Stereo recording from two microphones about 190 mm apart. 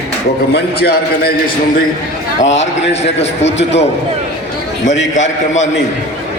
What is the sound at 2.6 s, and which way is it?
Speech, 35° left (ahead or behind).